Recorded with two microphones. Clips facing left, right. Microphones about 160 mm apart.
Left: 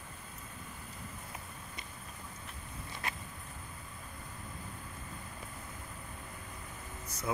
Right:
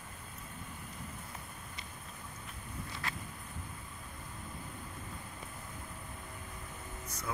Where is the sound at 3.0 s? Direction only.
20° left (ahead or behind).